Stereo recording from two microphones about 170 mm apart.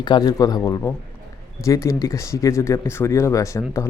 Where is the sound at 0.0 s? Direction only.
25° left (ahead or behind).